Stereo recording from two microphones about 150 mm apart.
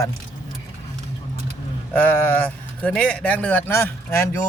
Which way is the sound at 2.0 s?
15° left (ahead or behind).